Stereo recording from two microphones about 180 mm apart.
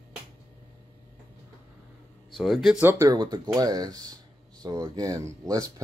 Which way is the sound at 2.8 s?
15° right (ahead or behind).